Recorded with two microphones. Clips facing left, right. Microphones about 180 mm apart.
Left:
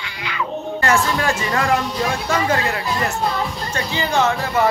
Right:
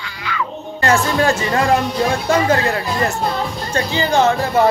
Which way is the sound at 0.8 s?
30° right (ahead or behind).